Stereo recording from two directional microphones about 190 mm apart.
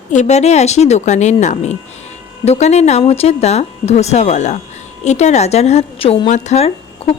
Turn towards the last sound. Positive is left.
turn(degrees=35)  # may be behind; listen again after turning